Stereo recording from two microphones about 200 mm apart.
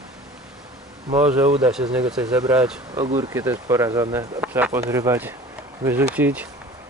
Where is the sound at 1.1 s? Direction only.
10° right (ahead or behind).